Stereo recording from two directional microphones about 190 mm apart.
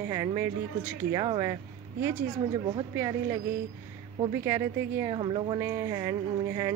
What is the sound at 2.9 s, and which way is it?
Speech, 15° right (ahead or behind).